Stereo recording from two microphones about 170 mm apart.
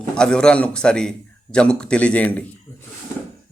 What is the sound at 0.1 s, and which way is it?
A man's voice, 5° left (ahead or behind).